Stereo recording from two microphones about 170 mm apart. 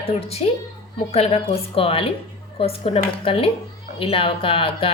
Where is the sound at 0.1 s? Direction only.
35° left (ahead or behind).